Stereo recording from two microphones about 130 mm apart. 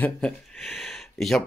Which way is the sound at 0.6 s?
Centre (ahead or behind).